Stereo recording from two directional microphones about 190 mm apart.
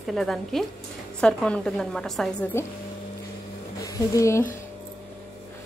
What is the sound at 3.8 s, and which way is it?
Speech, 15° left (ahead or behind).